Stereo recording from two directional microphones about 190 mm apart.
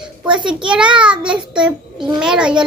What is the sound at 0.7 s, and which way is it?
A child's voice, 5° right (ahead or behind).